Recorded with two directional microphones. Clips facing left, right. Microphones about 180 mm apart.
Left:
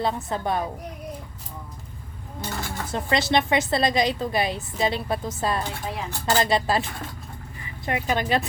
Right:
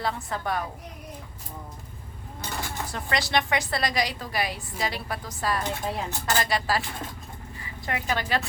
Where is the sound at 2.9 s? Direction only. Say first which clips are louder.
Left 5 dB; 25° left (ahead or behind).